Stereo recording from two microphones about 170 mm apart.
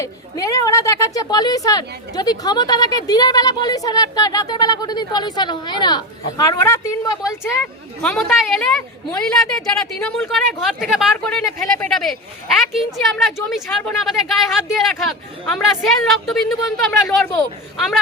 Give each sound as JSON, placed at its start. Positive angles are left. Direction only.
{"t": 0.0, "sound": "a woman's voice", "side_deg": 20}
{"t": 7.6, "sound": "a woman's voice", "side_deg": 5}